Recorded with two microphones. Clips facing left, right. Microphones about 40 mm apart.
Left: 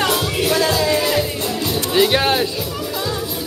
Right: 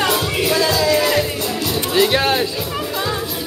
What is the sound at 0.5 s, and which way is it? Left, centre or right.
Music, left.